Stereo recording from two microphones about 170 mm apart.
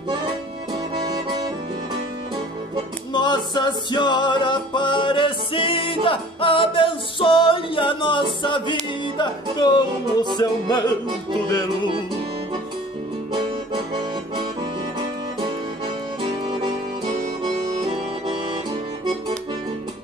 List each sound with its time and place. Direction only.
3.1 s music: 25° left (ahead or behind)
17.8 s music: 30° right (ahead or behind)